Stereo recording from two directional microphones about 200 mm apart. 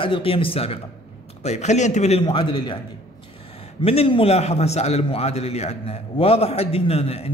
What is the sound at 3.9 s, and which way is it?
A man's voice, 30° left (ahead or behind).